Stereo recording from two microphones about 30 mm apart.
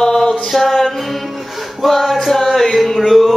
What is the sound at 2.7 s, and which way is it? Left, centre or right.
Music, centre.